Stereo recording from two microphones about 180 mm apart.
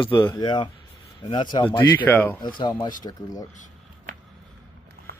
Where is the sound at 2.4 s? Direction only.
25° left (ahead or behind).